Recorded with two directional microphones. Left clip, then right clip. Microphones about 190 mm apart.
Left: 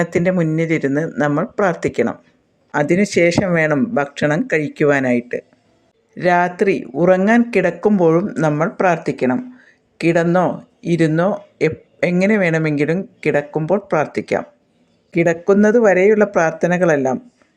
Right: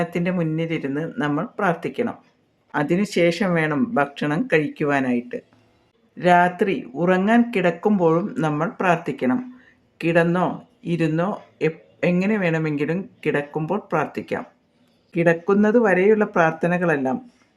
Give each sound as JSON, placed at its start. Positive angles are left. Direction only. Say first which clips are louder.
{"t": 0.0, "sound": "speech", "louder": "left 7 dB", "side_deg": 35}
{"t": 2.7, "sound": "speech", "louder": "left 6 dB", "side_deg": 20}